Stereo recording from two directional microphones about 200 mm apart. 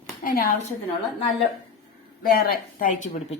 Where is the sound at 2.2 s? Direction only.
50° left (ahead or behind).